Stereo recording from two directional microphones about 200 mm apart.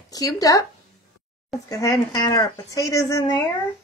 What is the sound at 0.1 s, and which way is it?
Speech, 15° left (ahead or behind).